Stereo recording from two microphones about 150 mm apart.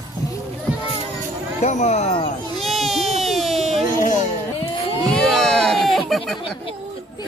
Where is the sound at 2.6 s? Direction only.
Centre (ahead or behind).